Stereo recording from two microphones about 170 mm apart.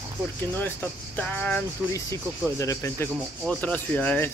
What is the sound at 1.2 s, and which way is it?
Speech, 10° left (ahead or behind).